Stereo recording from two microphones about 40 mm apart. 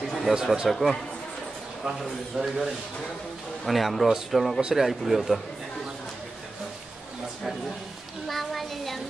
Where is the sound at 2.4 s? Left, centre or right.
Right.